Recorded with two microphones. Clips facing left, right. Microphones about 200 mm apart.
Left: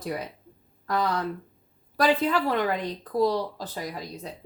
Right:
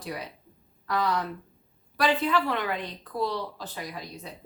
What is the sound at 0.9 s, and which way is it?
Speech, 40° left (ahead or behind).